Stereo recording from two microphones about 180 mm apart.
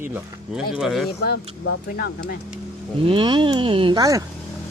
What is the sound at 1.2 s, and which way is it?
Speech, 65° left (ahead or behind).